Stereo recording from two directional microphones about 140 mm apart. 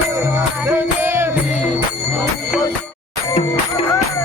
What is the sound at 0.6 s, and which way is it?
Music, 15° right (ahead or behind).